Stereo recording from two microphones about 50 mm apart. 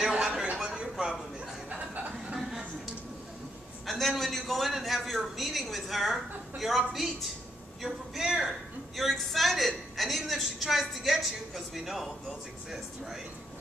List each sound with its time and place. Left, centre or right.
0.0 s a sound: centre
0.6 s dishes: centre
1.7 s chuckle: right
3.8 s a man's voice: centre